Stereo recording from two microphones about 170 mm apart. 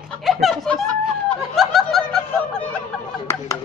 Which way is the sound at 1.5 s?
Centre (ahead or behind).